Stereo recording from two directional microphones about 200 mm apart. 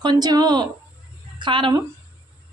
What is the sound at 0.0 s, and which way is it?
Speech, 20° right (ahead or behind).